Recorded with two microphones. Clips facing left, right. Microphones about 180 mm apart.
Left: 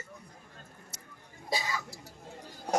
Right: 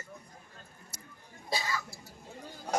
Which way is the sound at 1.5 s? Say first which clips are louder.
Left 1 dB; 15° left (ahead or behind).